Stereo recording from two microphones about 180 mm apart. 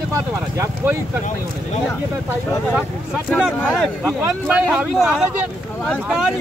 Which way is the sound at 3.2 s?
5° right (ahead or behind).